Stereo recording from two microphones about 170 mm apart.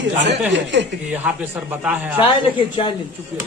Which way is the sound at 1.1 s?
10° right (ahead or behind).